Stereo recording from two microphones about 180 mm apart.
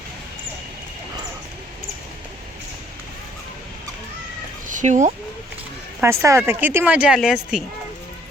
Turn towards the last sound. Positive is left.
turn(degrees=-5)  # may be behind; listen again after turning